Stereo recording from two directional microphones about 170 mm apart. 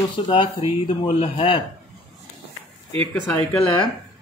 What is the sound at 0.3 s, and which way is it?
Speech, 35° left (ahead or behind).